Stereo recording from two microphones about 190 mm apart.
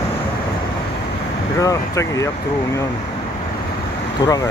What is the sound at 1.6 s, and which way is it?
Speech, 15° left (ahead or behind).